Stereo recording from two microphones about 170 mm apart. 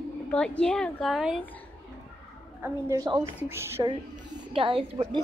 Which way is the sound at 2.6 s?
20° right (ahead or behind).